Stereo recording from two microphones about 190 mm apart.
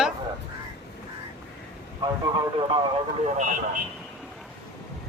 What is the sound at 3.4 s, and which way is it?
Speech, 45° right (ahead or behind).